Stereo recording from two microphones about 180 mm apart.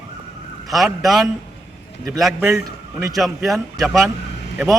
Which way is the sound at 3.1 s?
Centre (ahead or behind).